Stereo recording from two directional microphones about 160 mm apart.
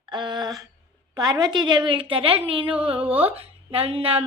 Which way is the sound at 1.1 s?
25° right (ahead or behind).